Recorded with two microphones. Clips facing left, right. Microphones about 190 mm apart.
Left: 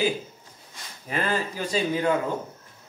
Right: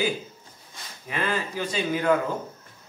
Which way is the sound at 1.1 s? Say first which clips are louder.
Left 1 dB; 40° left (ahead or behind).